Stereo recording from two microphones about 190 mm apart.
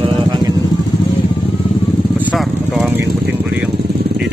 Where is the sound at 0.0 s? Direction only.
20° right (ahead or behind).